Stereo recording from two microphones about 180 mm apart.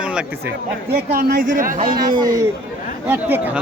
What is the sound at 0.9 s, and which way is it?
Speech, 55° right (ahead or behind).